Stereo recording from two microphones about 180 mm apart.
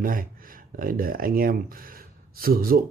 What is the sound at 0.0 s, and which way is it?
Speech, 50° right (ahead or behind).